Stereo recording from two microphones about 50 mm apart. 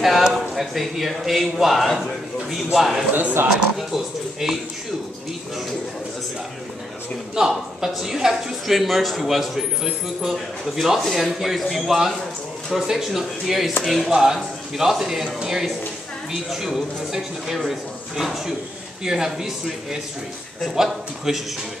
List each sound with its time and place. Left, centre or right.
0.0 s a man's voice: centre
3.1 s speech: right
3.7 s a man's voice: centre
7.3 s a man's voice: centre
14.1 s a man's voice: centre